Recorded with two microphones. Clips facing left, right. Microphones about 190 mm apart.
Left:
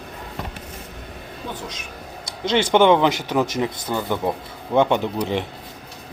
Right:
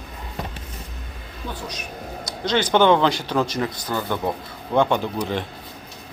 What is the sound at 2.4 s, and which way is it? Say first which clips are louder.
Speech: left 2 dB; 25° left (ahead or behind).